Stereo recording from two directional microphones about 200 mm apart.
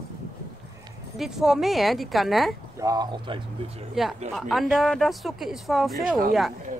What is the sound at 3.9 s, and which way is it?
Speech, centre (ahead or behind).